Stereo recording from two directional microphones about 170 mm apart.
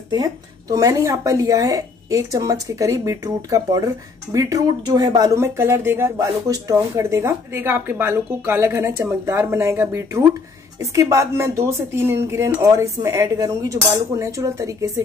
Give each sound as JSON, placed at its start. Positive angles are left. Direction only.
{"t": 0.1, "sound": "speech", "side_deg": -20}